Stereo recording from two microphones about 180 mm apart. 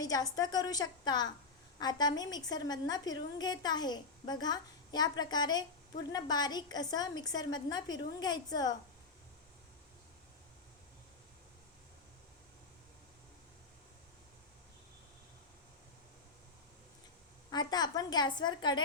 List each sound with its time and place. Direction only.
0.0 s a woman's voice: 20° left (ahead or behind)
17.5 s a woman's voice: 25° left (ahead or behind)